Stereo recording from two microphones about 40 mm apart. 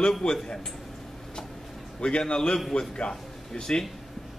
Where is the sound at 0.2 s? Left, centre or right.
Left.